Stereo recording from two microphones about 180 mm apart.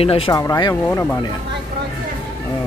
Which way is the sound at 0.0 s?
30° left (ahead or behind).